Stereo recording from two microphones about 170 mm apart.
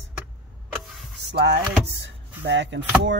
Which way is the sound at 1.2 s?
80° right.